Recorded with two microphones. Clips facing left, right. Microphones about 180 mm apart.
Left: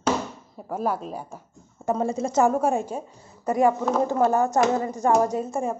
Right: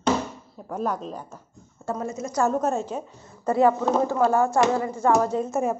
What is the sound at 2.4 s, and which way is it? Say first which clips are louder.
A woman's voice: left 1 dB; 10° left (ahead or behind).